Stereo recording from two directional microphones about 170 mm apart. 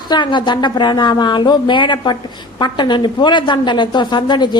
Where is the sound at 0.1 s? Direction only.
25° left (ahead or behind).